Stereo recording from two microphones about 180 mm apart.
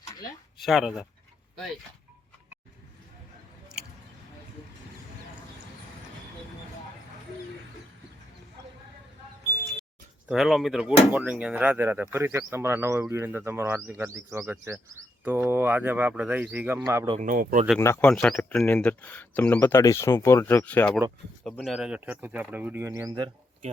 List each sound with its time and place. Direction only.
0.6 s speech: centre (ahead or behind)
10.2 s speech: centre (ahead or behind)
17.2 s speech: 50° right (ahead or behind)
17.7 s speech: 10° left (ahead or behind); by 23.3 s 20° right (ahead or behind)